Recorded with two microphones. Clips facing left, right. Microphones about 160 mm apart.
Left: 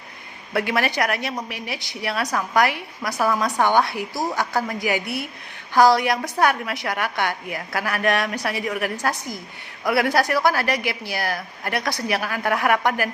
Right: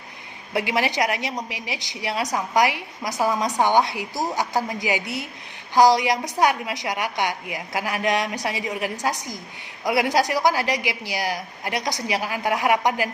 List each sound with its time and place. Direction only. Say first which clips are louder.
0.5 s a woman's voice: left 1 dB; 15° right (ahead or behind)